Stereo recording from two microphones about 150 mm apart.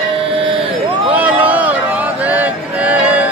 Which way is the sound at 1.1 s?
10° right (ahead or behind).